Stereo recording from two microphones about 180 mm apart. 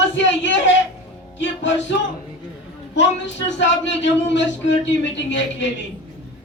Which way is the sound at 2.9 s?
90° left.